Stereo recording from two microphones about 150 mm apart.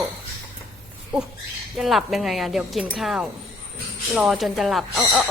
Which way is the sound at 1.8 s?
Centre (ahead or behind).